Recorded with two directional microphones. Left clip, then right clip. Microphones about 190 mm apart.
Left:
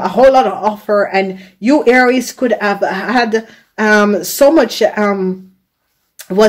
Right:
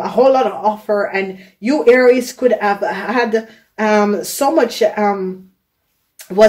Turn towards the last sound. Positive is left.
turn(degrees=50)  # may be behind; listen again after turning